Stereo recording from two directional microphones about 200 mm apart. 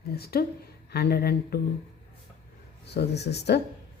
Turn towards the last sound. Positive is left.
turn(degrees=55)  # may be behind; listen again after turning